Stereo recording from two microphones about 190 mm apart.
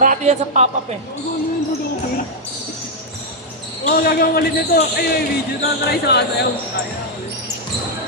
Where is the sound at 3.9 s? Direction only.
50° left (ahead or behind).